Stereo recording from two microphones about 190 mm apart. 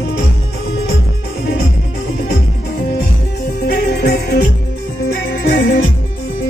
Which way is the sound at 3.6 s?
55° left (ahead or behind).